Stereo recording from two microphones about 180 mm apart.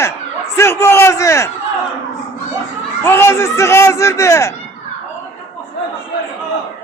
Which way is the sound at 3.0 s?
15° left (ahead or behind).